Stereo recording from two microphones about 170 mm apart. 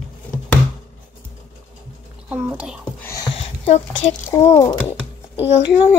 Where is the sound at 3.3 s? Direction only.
35° left (ahead or behind).